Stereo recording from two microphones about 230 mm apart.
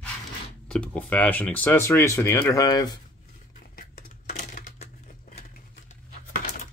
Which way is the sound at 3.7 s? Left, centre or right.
Left.